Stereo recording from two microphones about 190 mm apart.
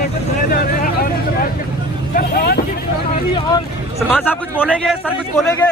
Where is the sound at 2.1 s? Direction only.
55° left (ahead or behind).